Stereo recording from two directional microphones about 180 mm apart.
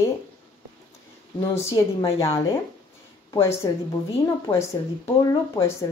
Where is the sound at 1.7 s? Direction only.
20° left (ahead or behind).